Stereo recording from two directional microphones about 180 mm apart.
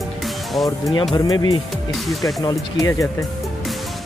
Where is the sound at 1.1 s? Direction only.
20° left (ahead or behind).